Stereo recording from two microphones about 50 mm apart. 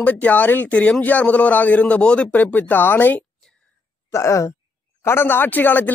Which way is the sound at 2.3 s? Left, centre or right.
Left.